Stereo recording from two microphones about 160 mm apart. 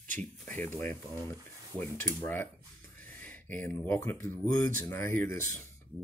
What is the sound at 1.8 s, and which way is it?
Speech, 15° left (ahead or behind).